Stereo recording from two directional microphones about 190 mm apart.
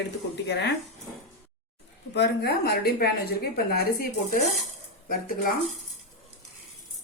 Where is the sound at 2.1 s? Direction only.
55° left (ahead or behind).